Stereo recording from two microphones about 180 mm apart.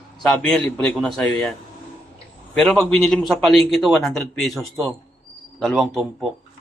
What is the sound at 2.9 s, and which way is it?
A man's voice, centre (ahead or behind).